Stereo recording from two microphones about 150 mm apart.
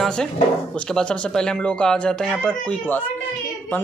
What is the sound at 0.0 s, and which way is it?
A man's voice, 5° left (ahead or behind).